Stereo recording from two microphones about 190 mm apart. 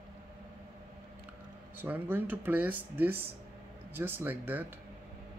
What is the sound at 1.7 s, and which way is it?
Speech, 10° right (ahead or behind).